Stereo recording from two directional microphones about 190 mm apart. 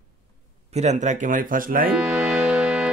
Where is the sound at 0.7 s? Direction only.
35° right (ahead or behind).